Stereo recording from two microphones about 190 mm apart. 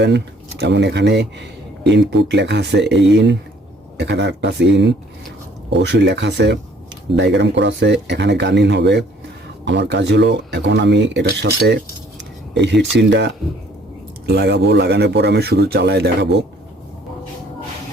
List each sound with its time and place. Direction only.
0.6 s speech: 65° right (ahead or behind)